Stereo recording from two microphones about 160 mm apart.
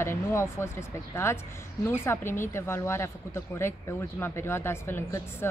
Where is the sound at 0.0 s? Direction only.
15° left (ahead or behind).